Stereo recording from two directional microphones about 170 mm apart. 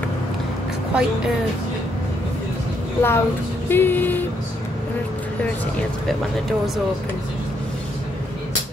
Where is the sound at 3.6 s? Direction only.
10° left (ahead or behind).